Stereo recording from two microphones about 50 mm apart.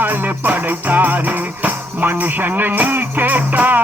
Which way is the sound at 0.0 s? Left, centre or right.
Right.